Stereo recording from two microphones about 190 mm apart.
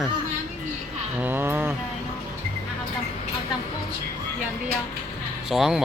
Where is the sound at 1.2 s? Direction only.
10° right (ahead or behind).